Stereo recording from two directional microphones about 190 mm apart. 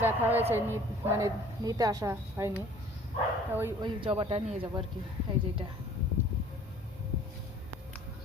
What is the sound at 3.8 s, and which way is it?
A man's voice, 25° right (ahead or behind).